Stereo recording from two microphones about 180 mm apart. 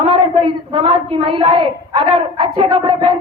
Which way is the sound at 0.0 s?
30° right (ahead or behind).